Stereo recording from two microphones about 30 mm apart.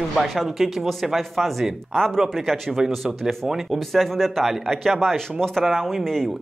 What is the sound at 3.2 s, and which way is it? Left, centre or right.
Speech, centre.